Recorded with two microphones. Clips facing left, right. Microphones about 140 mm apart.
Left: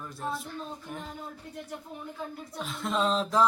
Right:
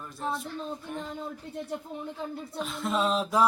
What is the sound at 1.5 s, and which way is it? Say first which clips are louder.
Speech: right 4 dB; 25° right (ahead or behind).